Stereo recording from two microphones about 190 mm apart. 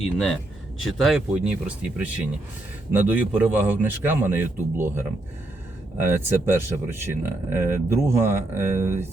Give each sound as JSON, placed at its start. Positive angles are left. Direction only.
{"t": 0.0, "sound": "speech", "side_deg": 5}